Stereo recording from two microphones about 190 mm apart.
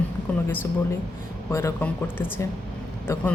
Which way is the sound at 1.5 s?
10° left (ahead or behind).